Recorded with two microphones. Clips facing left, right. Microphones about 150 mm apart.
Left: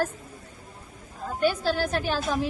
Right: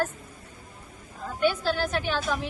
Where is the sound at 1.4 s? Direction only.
40° left (ahead or behind).